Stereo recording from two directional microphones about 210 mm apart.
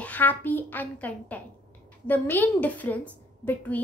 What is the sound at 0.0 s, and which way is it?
A woman's voice, 10° left (ahead or behind).